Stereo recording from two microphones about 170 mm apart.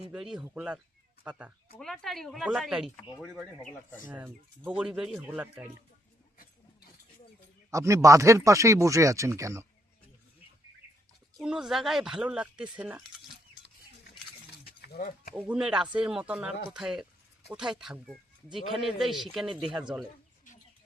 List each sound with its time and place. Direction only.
0.1 s speech: 5° right (ahead or behind)
1.8 s speech: centre (ahead or behind)
4.1 s speech: 10° right (ahead or behind)
7.7 s speech: 15° right (ahead or behind)
11.4 s speech: 5° right (ahead or behind)
14.6 s a sound: 60° left (ahead or behind)
15.3 s speech: 5° right (ahead or behind)